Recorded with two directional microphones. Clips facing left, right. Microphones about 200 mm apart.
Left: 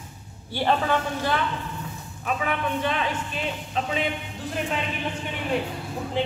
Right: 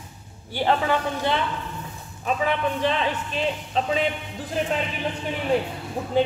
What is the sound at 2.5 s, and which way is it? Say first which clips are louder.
Speech: right 3 dB; 30° right (ahead or behind).